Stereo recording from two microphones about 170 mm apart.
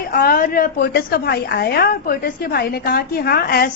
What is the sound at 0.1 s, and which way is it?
A woman's voice, 60° left (ahead or behind).